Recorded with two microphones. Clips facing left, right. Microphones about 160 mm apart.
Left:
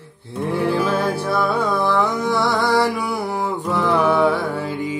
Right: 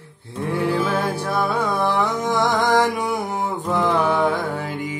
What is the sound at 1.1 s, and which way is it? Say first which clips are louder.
Music: left 2 dB; 15° right (ahead or behind).